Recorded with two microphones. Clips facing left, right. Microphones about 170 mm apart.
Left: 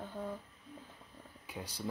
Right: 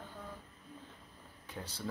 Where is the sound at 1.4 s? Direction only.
10° left (ahead or behind).